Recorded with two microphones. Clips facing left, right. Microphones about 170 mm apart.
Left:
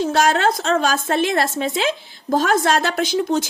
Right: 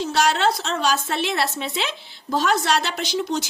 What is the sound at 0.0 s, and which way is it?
A woman's voice, 50° left (ahead or behind).